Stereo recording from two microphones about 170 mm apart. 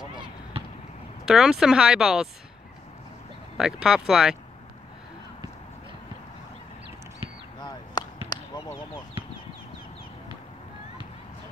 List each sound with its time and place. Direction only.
1.2 s speech: 5° right (ahead or behind)
3.5 s speech: 5° right (ahead or behind)
8.3 s basketball bounce: 25° left (ahead or behind)